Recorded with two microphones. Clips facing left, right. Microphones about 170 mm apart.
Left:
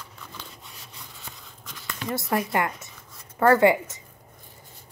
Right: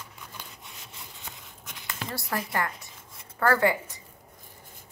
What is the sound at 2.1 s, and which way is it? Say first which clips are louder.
A woman's voice: left 7 dB; 20° left (ahead or behind).